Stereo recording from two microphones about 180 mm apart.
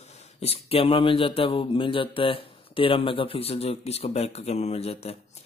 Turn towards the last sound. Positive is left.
turn(degrees=35)  # may be behind; listen again after turning